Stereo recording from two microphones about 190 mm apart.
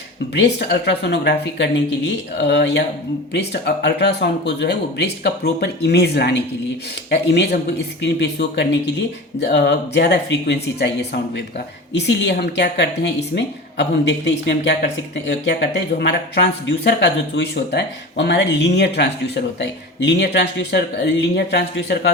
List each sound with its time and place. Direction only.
0.4 s speech: 65° left (ahead or behind)
16.0 s speech: 60° left (ahead or behind)